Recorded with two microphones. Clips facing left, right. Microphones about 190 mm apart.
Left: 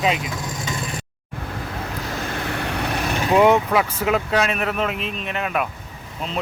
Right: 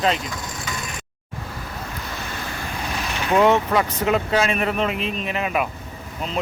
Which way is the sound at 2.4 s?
65° left (ahead or behind).